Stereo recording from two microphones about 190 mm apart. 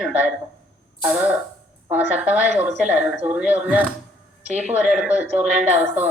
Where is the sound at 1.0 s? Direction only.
10° right (ahead or behind).